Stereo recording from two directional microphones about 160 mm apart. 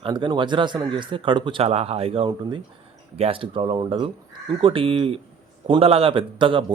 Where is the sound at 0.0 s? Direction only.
30° right (ahead or behind).